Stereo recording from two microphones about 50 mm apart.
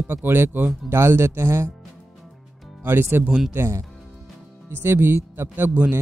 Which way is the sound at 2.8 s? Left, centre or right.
Right.